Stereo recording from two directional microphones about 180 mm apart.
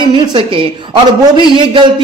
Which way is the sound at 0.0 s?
30° right (ahead or behind).